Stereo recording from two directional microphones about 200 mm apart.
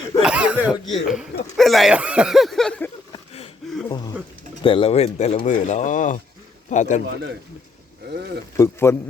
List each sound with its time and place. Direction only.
0.2 s speech: 5° right (ahead or behind)
3.1 s a sound: 30° left (ahead or behind)
3.8 s speech: 20° left (ahead or behind); by 7.0 s 35° left (ahead or behind)
8.5 s a man's voice: 15° left (ahead or behind)